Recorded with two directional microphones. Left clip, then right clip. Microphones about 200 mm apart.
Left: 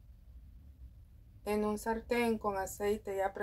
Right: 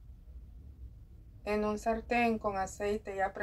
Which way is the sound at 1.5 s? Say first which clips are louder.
Right 2 dB; 30° left (ahead or behind).